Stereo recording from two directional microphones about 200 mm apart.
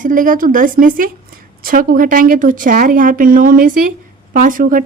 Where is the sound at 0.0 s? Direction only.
40° right (ahead or behind).